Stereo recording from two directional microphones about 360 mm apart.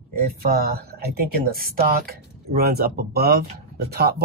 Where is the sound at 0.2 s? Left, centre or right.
Right.